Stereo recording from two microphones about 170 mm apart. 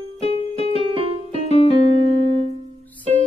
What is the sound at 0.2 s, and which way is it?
Music, 35° left (ahead or behind).